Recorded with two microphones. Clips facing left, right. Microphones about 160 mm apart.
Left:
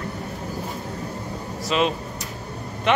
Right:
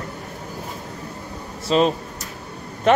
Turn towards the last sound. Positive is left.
turn(degrees=-45)  # may be behind; listen again after turning